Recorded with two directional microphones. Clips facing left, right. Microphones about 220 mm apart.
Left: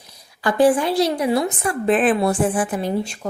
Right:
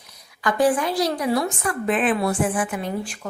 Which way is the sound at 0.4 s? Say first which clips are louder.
Left 4 dB; 30° left (ahead or behind).